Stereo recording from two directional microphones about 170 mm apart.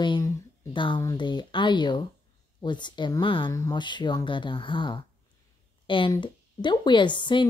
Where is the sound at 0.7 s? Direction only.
30° left (ahead or behind).